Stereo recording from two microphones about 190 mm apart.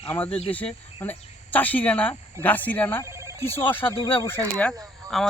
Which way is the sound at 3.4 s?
10° left (ahead or behind).